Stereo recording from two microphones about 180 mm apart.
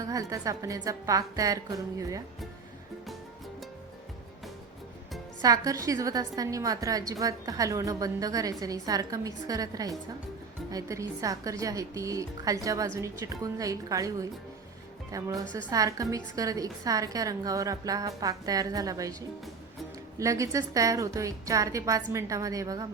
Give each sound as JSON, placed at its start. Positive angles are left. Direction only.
{"t": 0.0, "sound": "a woman's voice", "side_deg": -20}
{"t": 5.4, "sound": "a woman's voice", "side_deg": -20}
{"t": 20.1, "sound": "a woman's voice", "side_deg": -15}